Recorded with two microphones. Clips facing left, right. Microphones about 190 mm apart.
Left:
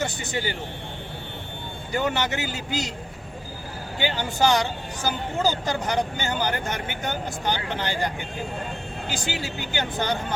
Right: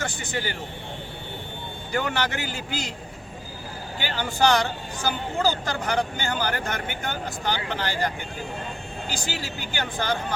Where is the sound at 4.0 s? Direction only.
20° left (ahead or behind).